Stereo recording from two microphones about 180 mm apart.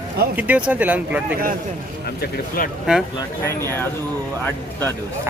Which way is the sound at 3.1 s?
15° left (ahead or behind).